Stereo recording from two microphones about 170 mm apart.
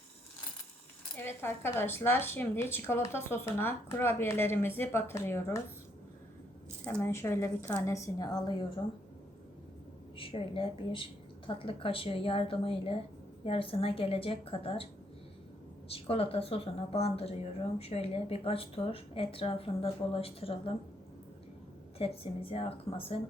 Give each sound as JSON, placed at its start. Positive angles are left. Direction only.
{"t": 1.1, "sound": "speech", "side_deg": 15}
{"t": 6.8, "sound": "speech", "side_deg": 10}
{"t": 10.2, "sound": "a woman's voice", "side_deg": 30}
{"t": 15.9, "sound": "a woman's voice", "side_deg": 35}
{"t": 21.9, "sound": "a woman's voice", "side_deg": 35}